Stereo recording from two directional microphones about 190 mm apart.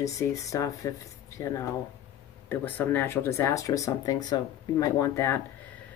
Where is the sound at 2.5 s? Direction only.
10° left (ahead or behind).